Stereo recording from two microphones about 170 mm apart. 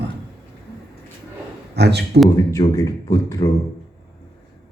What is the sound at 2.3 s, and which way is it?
A man's voice, 20° left (ahead or behind).